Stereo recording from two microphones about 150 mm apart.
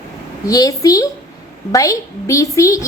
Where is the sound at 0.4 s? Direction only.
25° left (ahead or behind).